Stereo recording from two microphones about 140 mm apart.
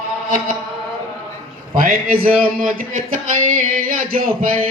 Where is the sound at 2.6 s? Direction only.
75° right (ahead or behind).